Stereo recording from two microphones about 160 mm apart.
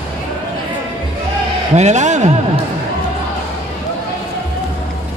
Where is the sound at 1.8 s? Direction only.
50° right (ahead or behind).